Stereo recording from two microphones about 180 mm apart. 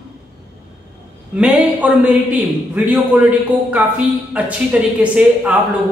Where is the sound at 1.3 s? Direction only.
5° right (ahead or behind).